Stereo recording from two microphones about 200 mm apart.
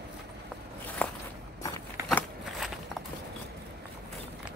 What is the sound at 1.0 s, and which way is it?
Walk, 10° left (ahead or behind).